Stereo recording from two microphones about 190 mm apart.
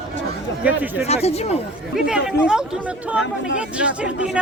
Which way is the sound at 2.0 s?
5° right (ahead or behind).